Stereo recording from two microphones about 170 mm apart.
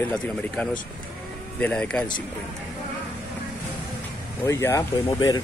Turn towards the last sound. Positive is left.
turn(degrees=25)  # may be behind; listen again after turning